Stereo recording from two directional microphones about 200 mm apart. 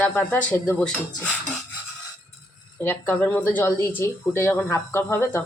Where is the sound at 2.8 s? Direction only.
10° left (ahead or behind).